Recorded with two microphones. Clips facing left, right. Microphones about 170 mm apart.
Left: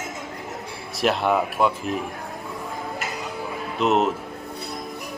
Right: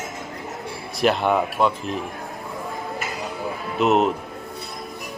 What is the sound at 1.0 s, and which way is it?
Speech, centre (ahead or behind).